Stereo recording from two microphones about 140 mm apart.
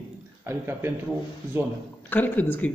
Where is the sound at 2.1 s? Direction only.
10° left (ahead or behind).